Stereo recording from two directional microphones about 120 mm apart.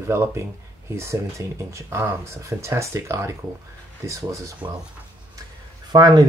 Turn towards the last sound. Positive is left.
turn(degrees=-30)  # may be behind; listen again after turning